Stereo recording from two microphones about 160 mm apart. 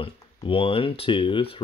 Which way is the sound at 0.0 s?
35° left (ahead or behind).